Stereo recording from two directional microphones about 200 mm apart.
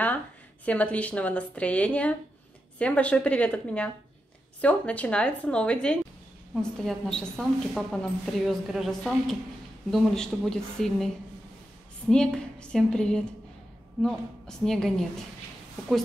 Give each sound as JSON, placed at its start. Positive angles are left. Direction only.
{"t": 0.7, "sound": "a woman's voice", "side_deg": 5}
{"t": 12.1, "sound": "a woman's voice", "side_deg": 5}